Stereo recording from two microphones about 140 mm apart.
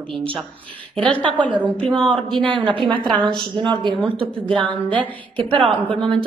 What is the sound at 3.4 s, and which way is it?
Speech, 35° right (ahead or behind).